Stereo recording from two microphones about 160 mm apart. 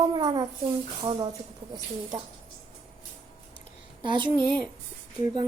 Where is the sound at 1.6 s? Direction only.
30° right (ahead or behind).